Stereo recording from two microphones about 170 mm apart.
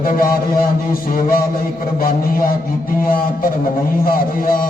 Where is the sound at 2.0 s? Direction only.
55° left (ahead or behind).